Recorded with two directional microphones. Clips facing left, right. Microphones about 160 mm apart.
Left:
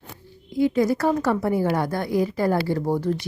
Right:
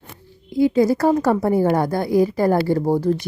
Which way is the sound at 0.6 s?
30° right (ahead or behind).